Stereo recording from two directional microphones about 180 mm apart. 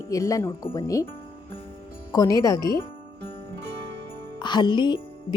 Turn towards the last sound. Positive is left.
turn(degrees=25)  # may be behind; listen again after turning